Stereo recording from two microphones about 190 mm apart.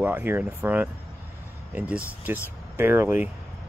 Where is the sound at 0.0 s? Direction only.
10° right (ahead or behind).